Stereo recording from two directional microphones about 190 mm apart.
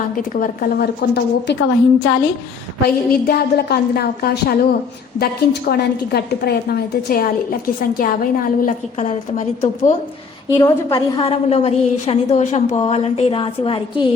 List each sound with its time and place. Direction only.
0.3 s a woman's voice: 50° left (ahead or behind)
3.1 s a woman's voice: 55° left (ahead or behind); by 9.9 s 40° left (ahead or behind)
10.5 s a woman's voice: 15° left (ahead or behind)